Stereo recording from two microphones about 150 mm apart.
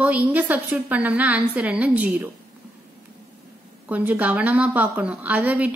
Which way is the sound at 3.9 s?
10° right (ahead or behind).